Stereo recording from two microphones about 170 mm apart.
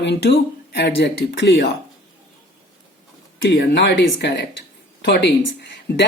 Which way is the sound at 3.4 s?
80° left.